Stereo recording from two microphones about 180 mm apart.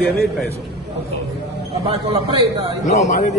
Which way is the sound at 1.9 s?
30° right (ahead or behind).